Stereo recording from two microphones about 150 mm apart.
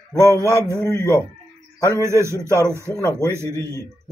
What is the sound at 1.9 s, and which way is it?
A man's voice, 20° right (ahead or behind).